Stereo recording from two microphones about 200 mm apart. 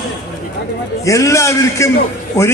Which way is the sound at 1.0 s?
15° left (ahead or behind).